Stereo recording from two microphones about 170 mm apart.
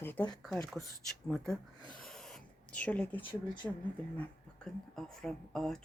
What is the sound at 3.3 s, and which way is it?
Speech, 25° left (ahead or behind).